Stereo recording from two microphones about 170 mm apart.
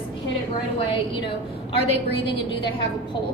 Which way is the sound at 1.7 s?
30° left (ahead or behind).